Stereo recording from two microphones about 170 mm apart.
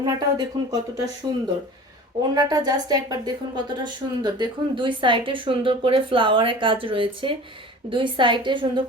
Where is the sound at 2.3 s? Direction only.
25° right (ahead or behind).